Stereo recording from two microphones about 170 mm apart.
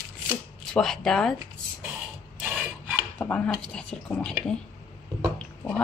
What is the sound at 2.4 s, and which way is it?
Filing, 10° right (ahead or behind).